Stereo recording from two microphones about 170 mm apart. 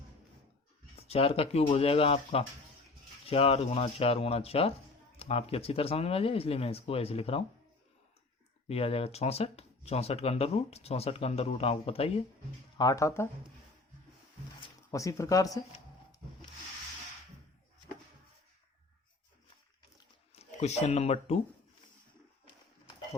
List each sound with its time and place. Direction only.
0.9 s speech: 35° left (ahead or behind)
8.6 s speech: 35° left (ahead or behind)
12.7 s speech: 20° left (ahead or behind)
14.8 s speech: 20° left (ahead or behind)
20.3 s speech: 40° left (ahead or behind)